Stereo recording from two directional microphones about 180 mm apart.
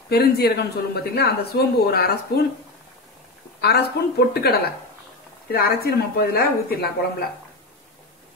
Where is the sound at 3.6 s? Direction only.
60° left (ahead or behind).